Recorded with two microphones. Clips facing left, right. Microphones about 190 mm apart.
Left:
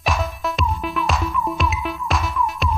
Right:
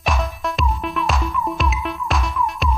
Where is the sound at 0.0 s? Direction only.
Centre (ahead or behind).